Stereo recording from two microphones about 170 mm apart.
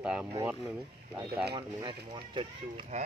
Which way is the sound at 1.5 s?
25° right (ahead or behind).